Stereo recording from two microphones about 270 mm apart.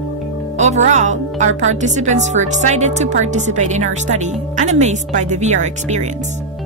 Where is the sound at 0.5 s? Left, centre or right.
Right.